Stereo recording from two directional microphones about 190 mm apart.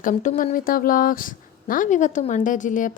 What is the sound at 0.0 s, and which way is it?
Speech, 40° left (ahead or behind).